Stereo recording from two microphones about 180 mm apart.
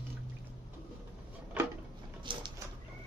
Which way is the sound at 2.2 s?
25° right (ahead or behind).